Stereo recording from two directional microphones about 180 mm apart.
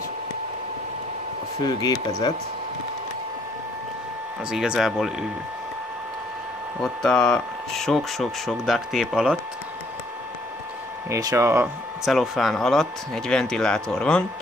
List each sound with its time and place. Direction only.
1.6 s speech: 20° left (ahead or behind)
4.5 s speech: 5° right (ahead or behind)
6.8 s speech: 5° left (ahead or behind)
11.1 s speech: 20° right (ahead or behind)
12.0 s speech: centre (ahead or behind)